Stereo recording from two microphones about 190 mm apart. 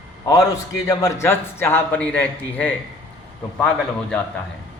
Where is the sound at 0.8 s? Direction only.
15° left (ahead or behind).